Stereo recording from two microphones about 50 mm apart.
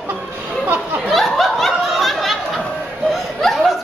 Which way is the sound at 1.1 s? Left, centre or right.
Centre.